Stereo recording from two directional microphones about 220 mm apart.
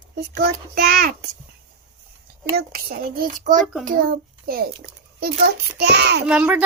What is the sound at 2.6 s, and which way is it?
A child's voice, 45° right (ahead or behind).